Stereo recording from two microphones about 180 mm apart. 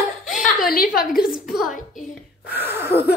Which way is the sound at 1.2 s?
Centre (ahead or behind).